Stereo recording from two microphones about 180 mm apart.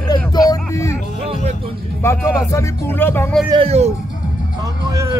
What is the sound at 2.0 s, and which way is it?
Speech, 15° left (ahead or behind).